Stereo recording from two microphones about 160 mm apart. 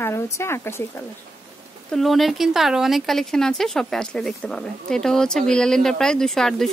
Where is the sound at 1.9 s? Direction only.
Centre (ahead or behind).